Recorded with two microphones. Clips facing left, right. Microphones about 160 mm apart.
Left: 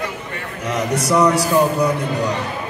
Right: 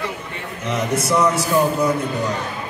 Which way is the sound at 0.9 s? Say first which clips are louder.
Left 3 dB; 35° left (ahead or behind).